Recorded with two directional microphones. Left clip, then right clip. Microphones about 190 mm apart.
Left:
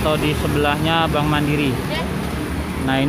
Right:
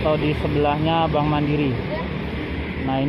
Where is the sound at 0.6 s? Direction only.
Centre (ahead or behind).